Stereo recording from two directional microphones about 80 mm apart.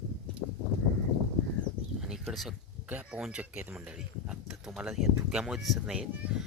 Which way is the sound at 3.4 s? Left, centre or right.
Centre.